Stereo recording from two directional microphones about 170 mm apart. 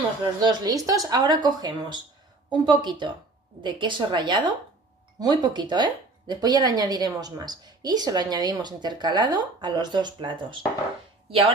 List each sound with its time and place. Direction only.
0.4 s speech: 25° right (ahead or behind)